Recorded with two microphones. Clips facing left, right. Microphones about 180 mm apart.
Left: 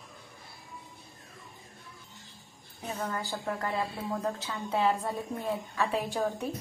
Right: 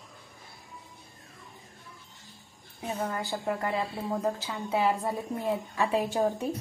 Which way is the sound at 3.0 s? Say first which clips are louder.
Right 2 dB; 15° right (ahead or behind).